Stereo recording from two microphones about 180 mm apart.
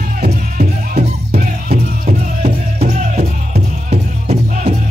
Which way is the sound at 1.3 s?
55° right (ahead or behind).